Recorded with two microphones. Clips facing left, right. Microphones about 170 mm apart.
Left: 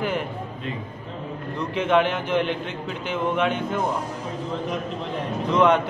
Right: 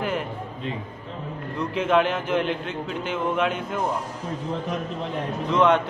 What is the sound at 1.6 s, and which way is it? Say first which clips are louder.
A man's voice: even; centre (ahead or behind).